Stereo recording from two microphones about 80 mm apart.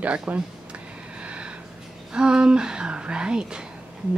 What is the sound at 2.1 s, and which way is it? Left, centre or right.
Speech, centre.